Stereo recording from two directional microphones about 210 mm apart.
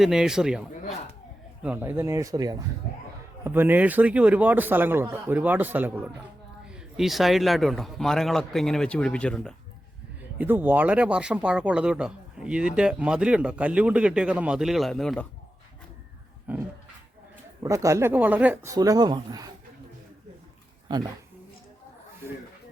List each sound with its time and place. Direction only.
0.0 s speech: centre (ahead or behind)
1.6 s a man's voice: 10° right (ahead or behind)
10.3 s speech: 10° right (ahead or behind)
16.5 s a man's voice: 10° right (ahead or behind)
20.8 s speech: 20° right (ahead or behind)